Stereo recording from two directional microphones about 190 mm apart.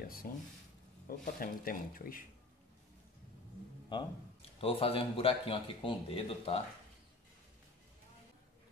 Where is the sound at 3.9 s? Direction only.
30° left (ahead or behind).